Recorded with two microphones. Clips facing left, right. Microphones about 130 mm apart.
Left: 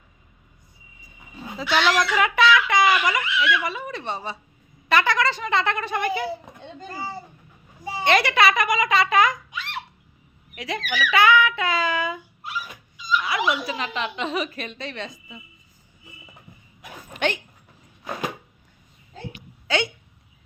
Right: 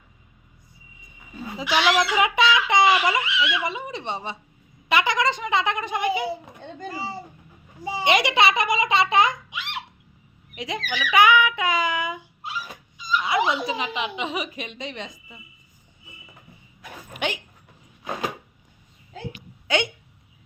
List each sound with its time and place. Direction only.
1.6 s speech: 5° right (ahead or behind)
2.0 s a woman's voice: 20° right (ahead or behind)
7.9 s a child's voice: 15° right (ahead or behind)
13.0 s dog: 45° right (ahead or behind)
13.2 s a woman's voice: 25° right (ahead or behind)
17.2 s speech: 10° right (ahead or behind)
19.6 s speech: 20° right (ahead or behind)